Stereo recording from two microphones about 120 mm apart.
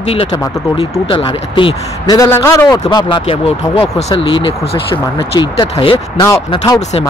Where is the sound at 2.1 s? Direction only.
25° left (ahead or behind).